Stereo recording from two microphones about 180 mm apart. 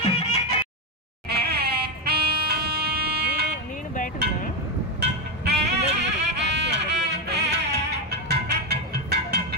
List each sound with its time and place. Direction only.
0.0 s music: 35° left (ahead or behind)
1.3 s music: 60° right (ahead or behind)
3.9 s cowbell: 50° left (ahead or behind)
5.4 s music: 70° right (ahead or behind)